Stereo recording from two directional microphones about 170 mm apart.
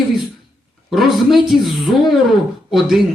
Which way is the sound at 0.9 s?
Centre (ahead or behind).